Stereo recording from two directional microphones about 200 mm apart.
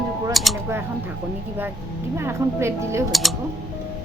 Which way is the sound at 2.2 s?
15° right (ahead or behind).